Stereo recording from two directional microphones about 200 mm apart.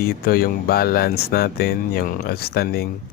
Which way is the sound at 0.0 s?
50° left (ahead or behind).